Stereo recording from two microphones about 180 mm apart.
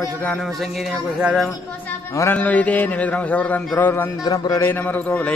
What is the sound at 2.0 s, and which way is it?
Speech, 15° left (ahead or behind).